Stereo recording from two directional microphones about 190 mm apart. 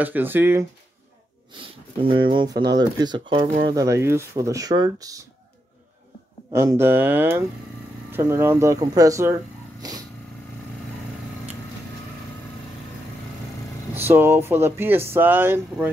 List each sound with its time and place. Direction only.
0.0 s speech: 10° right (ahead or behind)
1.5 s speech: 25° right (ahead or behind)
6.5 s speech: 15° right (ahead or behind)
13.9 s speech: 10° right (ahead or behind)